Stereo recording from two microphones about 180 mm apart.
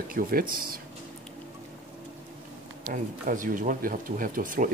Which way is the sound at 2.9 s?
50° right (ahead or behind).